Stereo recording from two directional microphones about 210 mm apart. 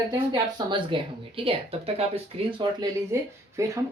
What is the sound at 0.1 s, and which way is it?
Speech, 20° right (ahead or behind).